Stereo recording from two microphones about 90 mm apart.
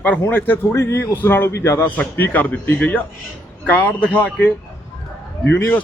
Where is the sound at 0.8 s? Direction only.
35° left (ahead or behind).